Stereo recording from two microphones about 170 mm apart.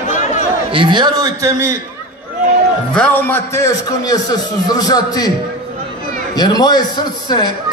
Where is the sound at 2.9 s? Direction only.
10° left (ahead or behind).